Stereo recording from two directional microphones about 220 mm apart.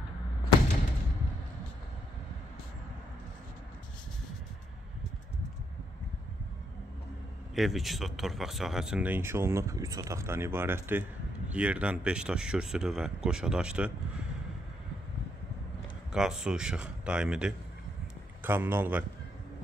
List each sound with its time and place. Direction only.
7.5 s speech: centre (ahead or behind)
16.1 s speech: centre (ahead or behind)